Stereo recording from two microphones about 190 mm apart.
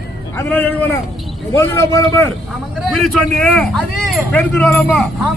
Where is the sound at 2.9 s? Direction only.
5° left (ahead or behind).